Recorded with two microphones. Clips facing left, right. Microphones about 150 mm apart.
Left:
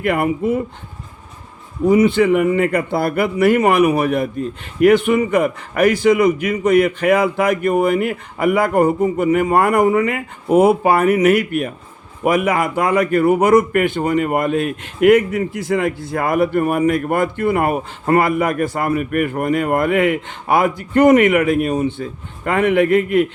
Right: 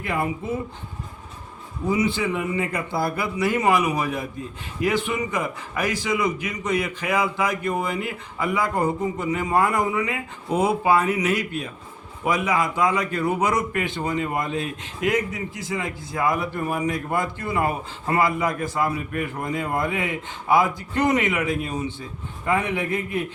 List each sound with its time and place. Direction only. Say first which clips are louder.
0.0 s a man's voice: left 9 dB; 65° left (ahead or behind)
1.9 s a man's voice: left 10 dB; 60° left (ahead or behind)